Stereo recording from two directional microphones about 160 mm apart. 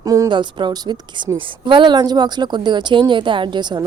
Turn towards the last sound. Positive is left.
turn(degrees=-25)  # may be behind; listen again after turning